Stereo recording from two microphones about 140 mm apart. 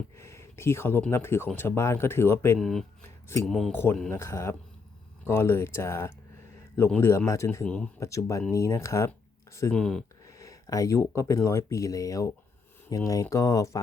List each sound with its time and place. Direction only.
0.2 s speech: 20° left (ahead or behind)
2.6 s speech: 5° left (ahead or behind)
3.0 s a sound: 20° left (ahead or behind)
3.4 s speech: centre (ahead or behind)
3.7 s speech: 15° left (ahead or behind)
9.7 s speech: 5° left (ahead or behind)
10.2 s speech: 25° left (ahead or behind)